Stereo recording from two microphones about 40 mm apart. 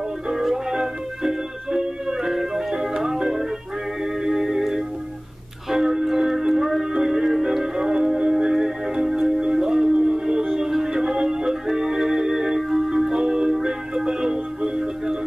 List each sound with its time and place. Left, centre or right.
0.3 s music: centre
12.6 s music: centre